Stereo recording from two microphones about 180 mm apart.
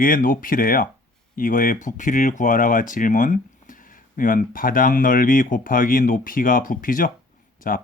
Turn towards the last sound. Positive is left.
turn(degrees=50)  # may be behind; listen again after turning